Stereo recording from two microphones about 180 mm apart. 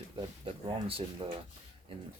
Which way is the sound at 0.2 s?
30° right (ahead or behind).